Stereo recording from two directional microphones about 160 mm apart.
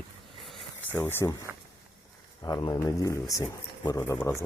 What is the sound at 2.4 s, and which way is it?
Speech, 25° left (ahead or behind).